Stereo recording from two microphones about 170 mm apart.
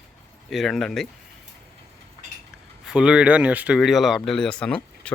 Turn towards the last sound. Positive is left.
turn(degrees=5)  # may be behind; listen again after turning